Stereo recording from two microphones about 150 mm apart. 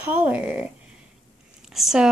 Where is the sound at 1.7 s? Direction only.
Centre (ahead or behind).